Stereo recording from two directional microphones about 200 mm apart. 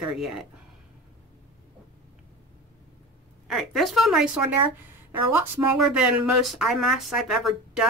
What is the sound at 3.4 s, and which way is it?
Speech, centre (ahead or behind).